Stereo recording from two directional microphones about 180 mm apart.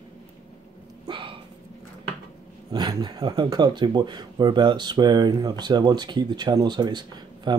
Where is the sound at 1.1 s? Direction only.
30° right (ahead or behind).